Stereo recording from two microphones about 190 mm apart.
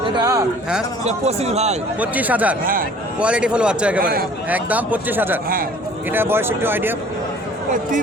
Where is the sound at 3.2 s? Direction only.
5° right (ahead or behind).